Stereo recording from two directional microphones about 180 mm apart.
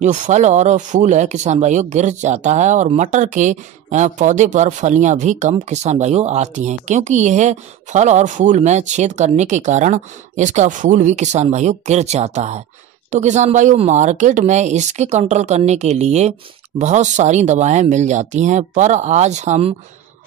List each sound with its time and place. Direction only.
0.0 s speech: 40° right (ahead or behind)